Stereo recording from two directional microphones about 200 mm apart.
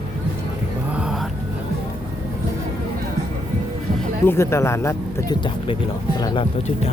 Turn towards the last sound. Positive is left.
turn(degrees=20)  # may be behind; listen again after turning